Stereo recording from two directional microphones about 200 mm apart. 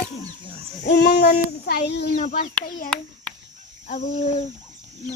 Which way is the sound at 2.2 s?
40° left (ahead or behind).